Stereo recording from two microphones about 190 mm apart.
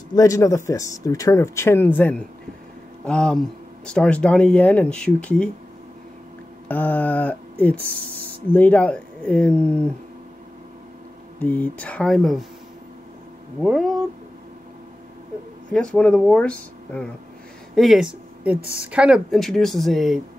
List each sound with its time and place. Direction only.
0.1 s speech: 15° left (ahead or behind)
6.7 s a sound: 10° left (ahead or behind)
8.5 s speech: 5° left (ahead or behind)
11.3 s speech: 10° left (ahead or behind)
13.6 s speech: centre (ahead or behind)
15.7 s speech: 5° left (ahead or behind)